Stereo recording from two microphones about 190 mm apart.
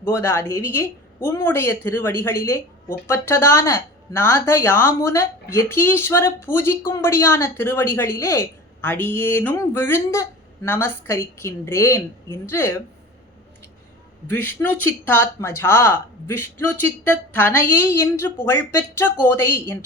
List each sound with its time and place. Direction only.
0.0 s a woman's voice: 10° left (ahead or behind)
14.3 s a woman's voice: 10° left (ahead or behind)